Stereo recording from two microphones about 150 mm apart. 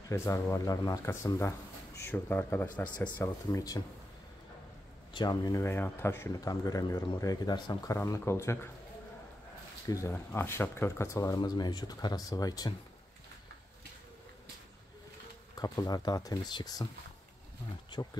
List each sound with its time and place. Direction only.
0.1 s speech: 20° left (ahead or behind)
3.5 s speech: 25° left (ahead or behind)
5.1 s speech: 30° left (ahead or behind)
9.8 s speech: 20° left (ahead or behind)
15.5 s speech: 25° left (ahead or behind)